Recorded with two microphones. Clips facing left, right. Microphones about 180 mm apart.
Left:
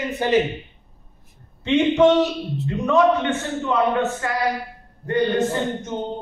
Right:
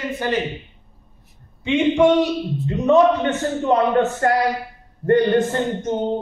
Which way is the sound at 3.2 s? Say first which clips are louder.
Right 3 dB; 45° right (ahead or behind).